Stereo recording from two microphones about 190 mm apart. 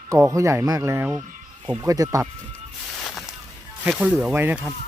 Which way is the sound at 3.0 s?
Centre (ahead or behind).